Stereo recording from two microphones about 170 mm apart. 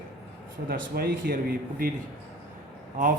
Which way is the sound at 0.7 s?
60° right (ahead or behind).